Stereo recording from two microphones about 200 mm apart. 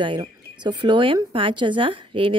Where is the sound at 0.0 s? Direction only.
25° right (ahead or behind).